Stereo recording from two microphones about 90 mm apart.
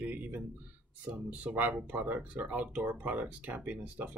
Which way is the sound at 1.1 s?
15° right (ahead or behind).